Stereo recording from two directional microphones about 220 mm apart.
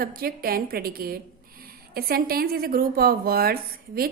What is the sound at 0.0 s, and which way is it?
A woman's voice, 40° right (ahead or behind).